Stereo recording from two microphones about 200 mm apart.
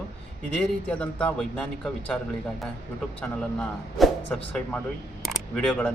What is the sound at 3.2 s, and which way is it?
A man's voice, 5° left (ahead or behind).